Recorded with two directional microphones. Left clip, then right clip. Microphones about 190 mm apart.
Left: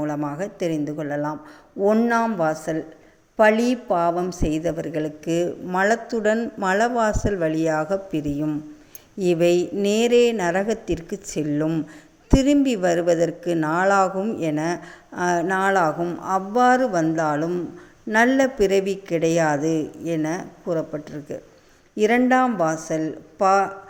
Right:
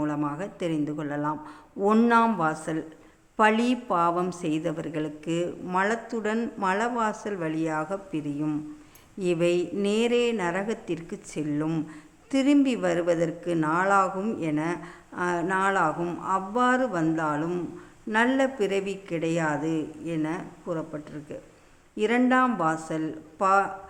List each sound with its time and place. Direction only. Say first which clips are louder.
0.0 s a woman's voice: left 3 dB; 10° left (ahead or behind)